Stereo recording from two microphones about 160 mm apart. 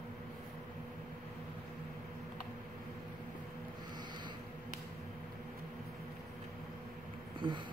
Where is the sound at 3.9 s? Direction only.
30° right (ahead or behind).